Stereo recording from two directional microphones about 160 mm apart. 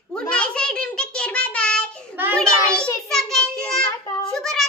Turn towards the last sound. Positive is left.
turn(degrees=5)  # may be behind; listen again after turning